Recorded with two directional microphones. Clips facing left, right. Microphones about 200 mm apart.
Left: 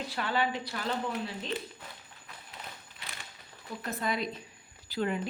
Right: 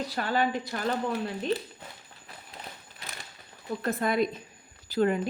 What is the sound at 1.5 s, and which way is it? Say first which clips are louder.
Speech: right 7 dB; 30° right (ahead or behind).